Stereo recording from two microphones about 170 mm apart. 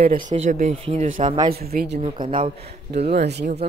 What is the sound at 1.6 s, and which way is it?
Speech, 65° right (ahead or behind).